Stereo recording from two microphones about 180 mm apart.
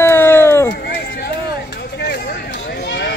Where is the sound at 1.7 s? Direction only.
70° left (ahead or behind).